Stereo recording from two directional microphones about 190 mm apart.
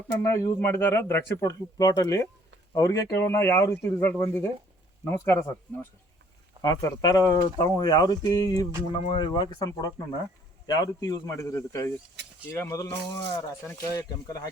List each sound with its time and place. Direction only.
0.2 s speech: 15° left (ahead or behind)